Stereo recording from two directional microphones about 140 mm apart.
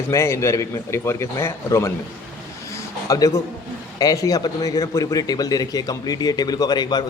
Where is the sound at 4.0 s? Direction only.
25° left (ahead or behind).